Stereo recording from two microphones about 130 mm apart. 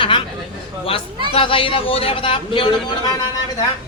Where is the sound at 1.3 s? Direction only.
45° left (ahead or behind).